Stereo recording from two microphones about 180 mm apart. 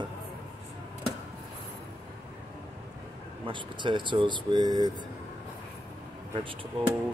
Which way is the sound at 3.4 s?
25° right (ahead or behind).